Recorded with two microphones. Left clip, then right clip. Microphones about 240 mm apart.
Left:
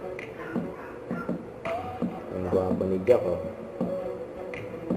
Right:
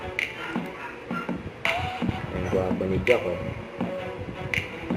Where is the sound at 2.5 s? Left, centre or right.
Right.